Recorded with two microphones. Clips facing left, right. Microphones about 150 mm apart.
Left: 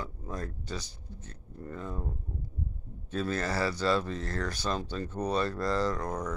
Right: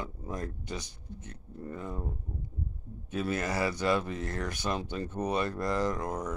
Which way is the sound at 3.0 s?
15° right (ahead or behind).